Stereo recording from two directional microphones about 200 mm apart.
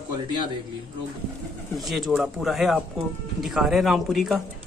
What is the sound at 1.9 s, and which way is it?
Speech, centre (ahead or behind).